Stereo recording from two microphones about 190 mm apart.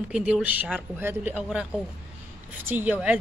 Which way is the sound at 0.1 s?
5° right (ahead or behind).